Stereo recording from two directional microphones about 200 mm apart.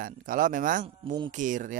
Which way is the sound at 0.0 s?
45° right (ahead or behind).